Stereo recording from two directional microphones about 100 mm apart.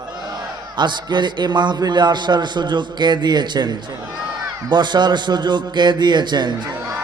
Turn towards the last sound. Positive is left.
turn(degrees=-45)  # may be behind; listen again after turning